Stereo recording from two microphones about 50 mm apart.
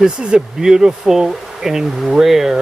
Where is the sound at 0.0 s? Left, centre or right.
Centre.